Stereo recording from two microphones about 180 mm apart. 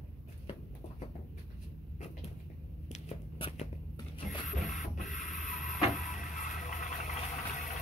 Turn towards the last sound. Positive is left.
turn(degrees=45)  # may be behind; listen again after turning